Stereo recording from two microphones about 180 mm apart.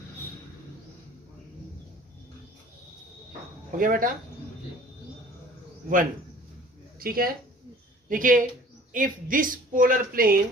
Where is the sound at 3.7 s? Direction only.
50° right (ahead or behind).